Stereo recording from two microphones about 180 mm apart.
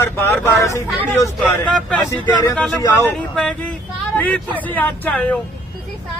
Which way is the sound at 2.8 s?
15° left (ahead or behind).